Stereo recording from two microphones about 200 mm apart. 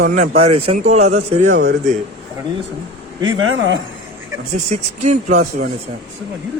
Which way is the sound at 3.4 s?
90° right.